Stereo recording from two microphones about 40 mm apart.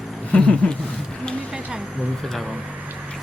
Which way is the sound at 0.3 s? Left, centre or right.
Left.